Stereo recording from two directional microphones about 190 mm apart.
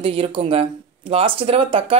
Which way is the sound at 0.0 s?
30° right (ahead or behind).